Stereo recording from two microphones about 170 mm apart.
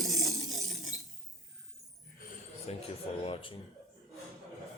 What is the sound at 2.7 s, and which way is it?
Speech, 35° left (ahead or behind).